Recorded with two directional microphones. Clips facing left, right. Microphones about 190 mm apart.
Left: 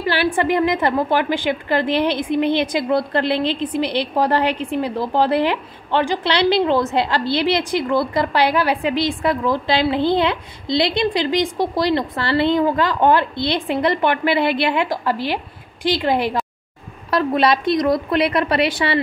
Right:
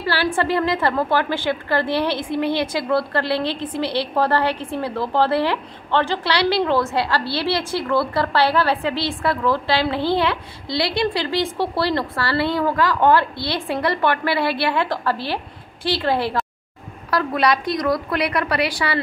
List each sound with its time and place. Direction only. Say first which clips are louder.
0.0 s a woman's voice: left 2 dB; 15° left (ahead or behind)